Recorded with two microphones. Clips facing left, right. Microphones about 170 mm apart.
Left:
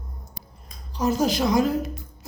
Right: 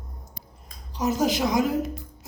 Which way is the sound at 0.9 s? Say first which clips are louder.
Left 1 dB; 20° right (ahead or behind).